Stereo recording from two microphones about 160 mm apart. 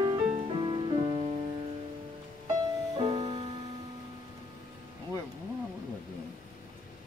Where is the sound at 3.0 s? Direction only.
35° right (ahead or behind).